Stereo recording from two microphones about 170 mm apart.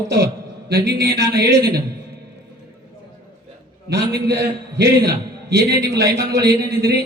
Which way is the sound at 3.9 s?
70° right (ahead or behind).